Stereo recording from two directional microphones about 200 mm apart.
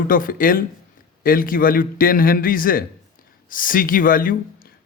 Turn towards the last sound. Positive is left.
turn(degrees=45)  # may be behind; listen again after turning